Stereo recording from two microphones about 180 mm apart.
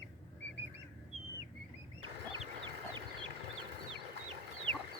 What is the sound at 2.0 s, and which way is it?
Chicken, 30° right (ahead or behind).